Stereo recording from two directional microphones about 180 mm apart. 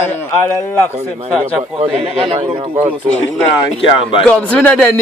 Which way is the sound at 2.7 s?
10° right (ahead or behind).